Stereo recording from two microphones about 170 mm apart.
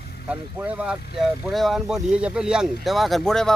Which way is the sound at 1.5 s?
Centre (ahead or behind).